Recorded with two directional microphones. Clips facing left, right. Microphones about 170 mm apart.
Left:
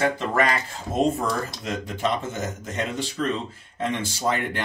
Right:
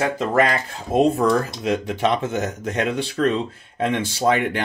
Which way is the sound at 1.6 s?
70° right (ahead or behind).